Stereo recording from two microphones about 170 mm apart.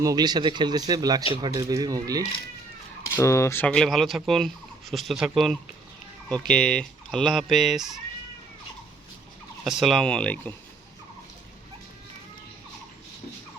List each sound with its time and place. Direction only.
0.0 s a man's voice: 20° right (ahead or behind)
3.2 s speech: 15° left (ahead or behind); by 7.9 s centre (ahead or behind)
9.6 s speech: centre (ahead or behind)